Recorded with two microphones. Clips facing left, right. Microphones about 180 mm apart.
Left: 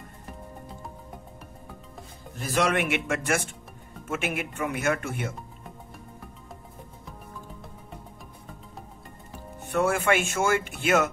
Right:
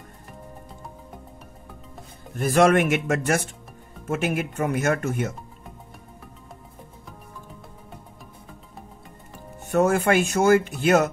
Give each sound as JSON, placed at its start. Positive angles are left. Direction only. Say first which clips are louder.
{"t": 2.3, "sound": "speech", "louder": "right 8 dB", "side_deg": -50}
{"t": 9.6, "sound": "speech", "louder": "right 5 dB", "side_deg": -40}